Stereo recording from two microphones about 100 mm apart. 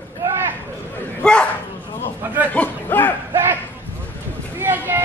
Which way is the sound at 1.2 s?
10° left (ahead or behind).